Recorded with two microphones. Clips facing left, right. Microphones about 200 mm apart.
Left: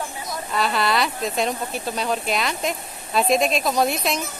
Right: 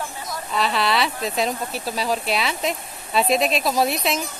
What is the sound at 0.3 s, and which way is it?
Speech, centre (ahead or behind).